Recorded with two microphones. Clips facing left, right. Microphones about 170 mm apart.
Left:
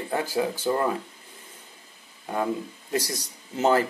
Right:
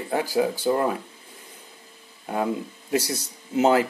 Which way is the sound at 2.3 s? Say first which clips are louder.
Right 1 dB; 15° right (ahead or behind).